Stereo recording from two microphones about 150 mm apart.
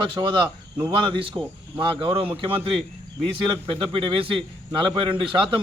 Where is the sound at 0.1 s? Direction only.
30° right (ahead or behind).